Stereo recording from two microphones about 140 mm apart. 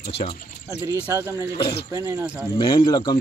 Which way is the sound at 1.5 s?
40° left (ahead or behind).